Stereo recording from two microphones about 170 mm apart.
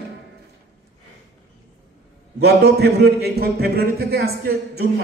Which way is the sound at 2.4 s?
75° right (ahead or behind).